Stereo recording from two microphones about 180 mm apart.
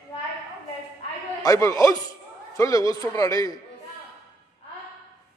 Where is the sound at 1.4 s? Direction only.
20° left (ahead or behind).